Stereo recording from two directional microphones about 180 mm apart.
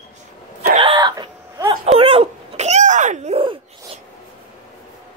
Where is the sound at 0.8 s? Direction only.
25° right (ahead or behind).